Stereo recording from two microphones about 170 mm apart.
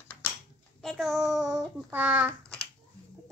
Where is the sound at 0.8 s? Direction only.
Centre (ahead or behind).